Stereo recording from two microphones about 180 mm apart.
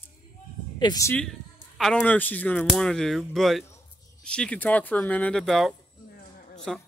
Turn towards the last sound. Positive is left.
turn(degrees=0)  # may be behind; listen again after turning